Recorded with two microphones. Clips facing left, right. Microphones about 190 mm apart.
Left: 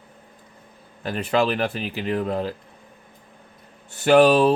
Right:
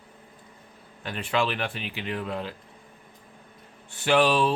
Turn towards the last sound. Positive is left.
turn(degrees=40)  # may be behind; listen again after turning